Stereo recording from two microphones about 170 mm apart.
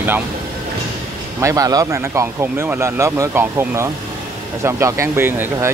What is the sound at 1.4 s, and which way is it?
Speech, 20° right (ahead or behind).